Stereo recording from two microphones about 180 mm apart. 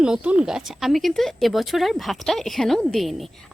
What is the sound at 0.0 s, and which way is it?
Speech, 5° right (ahead or behind).